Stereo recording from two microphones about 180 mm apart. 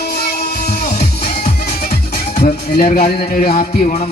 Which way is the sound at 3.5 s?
45° left (ahead or behind).